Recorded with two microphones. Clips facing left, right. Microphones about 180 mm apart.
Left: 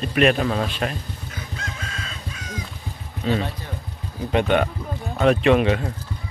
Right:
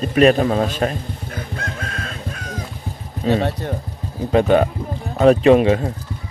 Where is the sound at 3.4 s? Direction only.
60° right (ahead or behind).